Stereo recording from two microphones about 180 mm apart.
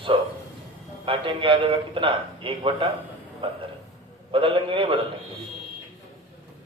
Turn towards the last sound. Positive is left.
turn(degrees=-30)  # may be behind; listen again after turning